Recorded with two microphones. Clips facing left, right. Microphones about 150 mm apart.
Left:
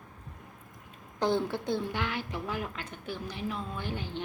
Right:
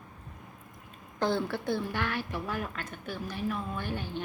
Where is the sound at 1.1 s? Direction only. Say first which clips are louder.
Left 1 dB; 15° left (ahead or behind).